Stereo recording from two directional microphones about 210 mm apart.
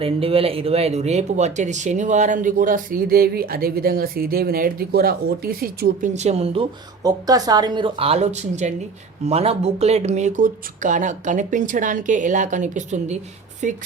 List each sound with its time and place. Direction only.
0.0 s speech: 25° right (ahead or behind)